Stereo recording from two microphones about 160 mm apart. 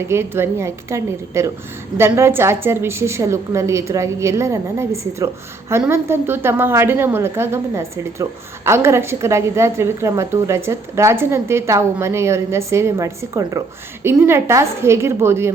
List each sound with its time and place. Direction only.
0.1 s a woman's voice: 15° right (ahead or behind)